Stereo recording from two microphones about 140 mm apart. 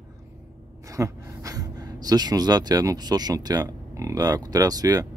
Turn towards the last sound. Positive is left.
turn(degrees=-25)  # may be behind; listen again after turning